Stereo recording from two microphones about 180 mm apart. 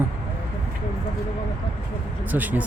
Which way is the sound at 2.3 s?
10° right (ahead or behind).